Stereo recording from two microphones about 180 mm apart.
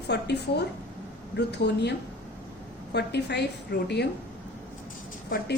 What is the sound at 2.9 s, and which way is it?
Speech, 65° left (ahead or behind).